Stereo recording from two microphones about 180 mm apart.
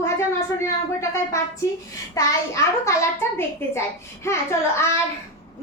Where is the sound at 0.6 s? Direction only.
15° left (ahead or behind).